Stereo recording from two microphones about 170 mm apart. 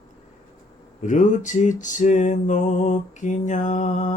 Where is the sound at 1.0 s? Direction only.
45° left (ahead or behind).